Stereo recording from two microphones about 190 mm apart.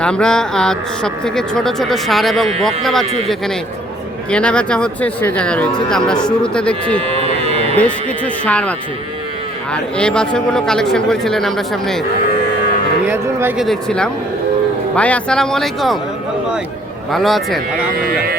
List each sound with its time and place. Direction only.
0.0 s speech: 5° left (ahead or behind)
7.1 s a sound: 30° right (ahead or behind)
7.8 s speech: 5° left (ahead or behind)
9.7 s speech: 5° left (ahead or behind)
13.1 s speech: 10° right (ahead or behind)
13.7 s speech: 5° left (ahead or behind)
17.1 s speech: centre (ahead or behind)
17.9 s speech: 55° right (ahead or behind)